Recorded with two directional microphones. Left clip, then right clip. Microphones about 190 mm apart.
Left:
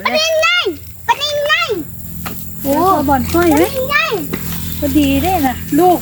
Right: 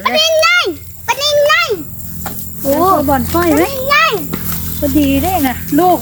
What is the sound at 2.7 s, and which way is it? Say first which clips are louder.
Speech: right 1 dB; 25° right (ahead or behind).